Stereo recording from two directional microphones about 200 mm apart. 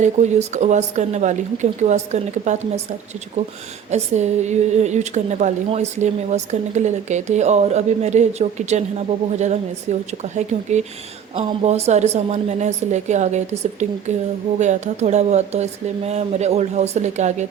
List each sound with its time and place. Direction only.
0.0 s a woman's voice: 35° right (ahead or behind)